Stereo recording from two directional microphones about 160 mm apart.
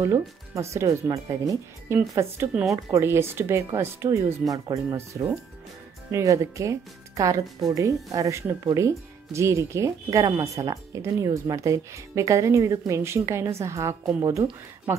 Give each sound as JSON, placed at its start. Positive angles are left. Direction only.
{"t": 0.0, "sound": "speech", "side_deg": -15}